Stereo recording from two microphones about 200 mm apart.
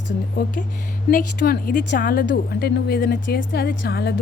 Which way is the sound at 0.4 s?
50° left (ahead or behind).